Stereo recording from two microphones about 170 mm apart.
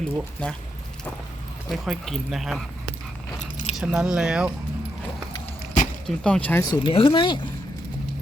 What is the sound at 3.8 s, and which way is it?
Speech, centre (ahead or behind).